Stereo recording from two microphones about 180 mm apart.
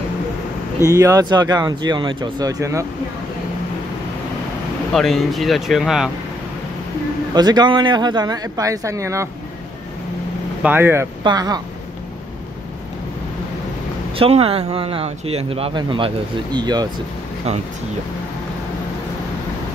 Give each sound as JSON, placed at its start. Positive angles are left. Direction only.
{"t": 0.8, "sound": "speech", "side_deg": -15}
{"t": 4.9, "sound": "speech", "side_deg": 0}
{"t": 7.3, "sound": "speech", "side_deg": -20}
{"t": 10.6, "sound": "speech", "side_deg": -10}
{"t": 14.1, "sound": "speech", "side_deg": -30}
{"t": 17.5, "sound": "speech", "side_deg": -35}